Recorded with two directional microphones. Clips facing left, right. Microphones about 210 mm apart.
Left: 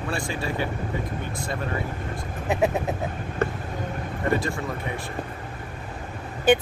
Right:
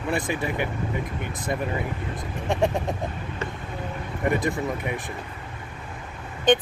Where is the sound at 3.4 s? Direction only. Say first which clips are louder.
Left 8 dB; 55° left (ahead or behind).